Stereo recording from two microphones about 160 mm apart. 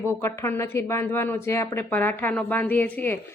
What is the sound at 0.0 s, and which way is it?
A woman's voice, 15° left (ahead or behind).